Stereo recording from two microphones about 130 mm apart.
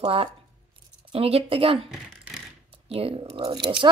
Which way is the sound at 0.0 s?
45° right (ahead or behind).